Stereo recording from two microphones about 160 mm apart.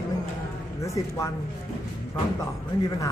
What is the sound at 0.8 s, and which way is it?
Speech, 20° left (ahead or behind).